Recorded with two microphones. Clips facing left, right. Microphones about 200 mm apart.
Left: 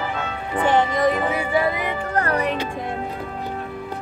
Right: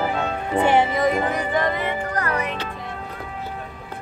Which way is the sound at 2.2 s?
35° left (ahead or behind).